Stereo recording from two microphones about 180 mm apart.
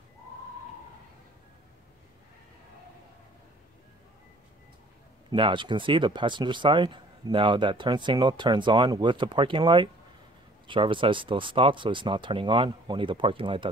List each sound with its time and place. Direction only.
5.3 s speech: 25° right (ahead or behind)